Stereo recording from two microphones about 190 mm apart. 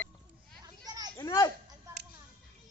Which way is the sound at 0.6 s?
20° right (ahead or behind).